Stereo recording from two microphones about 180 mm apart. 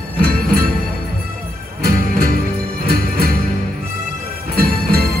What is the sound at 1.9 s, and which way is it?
Music, 55° right (ahead or behind).